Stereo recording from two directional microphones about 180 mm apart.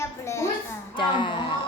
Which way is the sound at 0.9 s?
25° left (ahead or behind).